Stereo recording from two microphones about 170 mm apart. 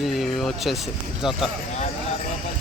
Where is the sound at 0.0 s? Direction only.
Centre (ahead or behind).